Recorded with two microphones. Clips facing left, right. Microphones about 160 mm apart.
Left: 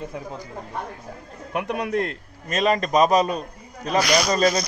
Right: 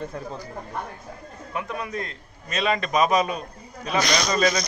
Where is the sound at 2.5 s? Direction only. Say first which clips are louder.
Left 4 dB; 40° left (ahead or behind).